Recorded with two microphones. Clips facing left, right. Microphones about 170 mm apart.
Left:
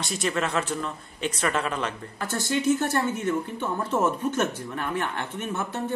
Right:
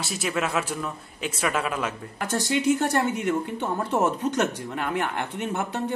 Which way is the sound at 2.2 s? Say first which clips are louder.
Right 1 dB; 20° right (ahead or behind).